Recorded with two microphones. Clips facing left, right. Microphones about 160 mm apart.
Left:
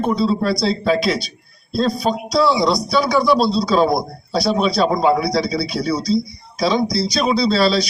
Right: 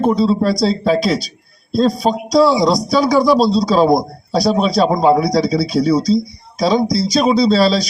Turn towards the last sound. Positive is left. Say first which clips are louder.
# right 3 dB
turn(degrees=-40)  # may be behind; listen again after turning